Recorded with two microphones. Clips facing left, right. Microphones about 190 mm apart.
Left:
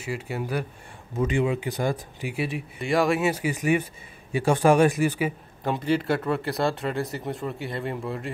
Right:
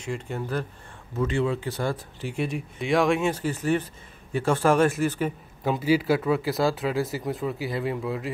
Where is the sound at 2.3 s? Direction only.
5° left (ahead or behind).